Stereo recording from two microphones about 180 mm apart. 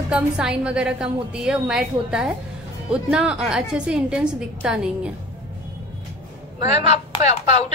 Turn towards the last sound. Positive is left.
turn(degrees=40)  # may be behind; listen again after turning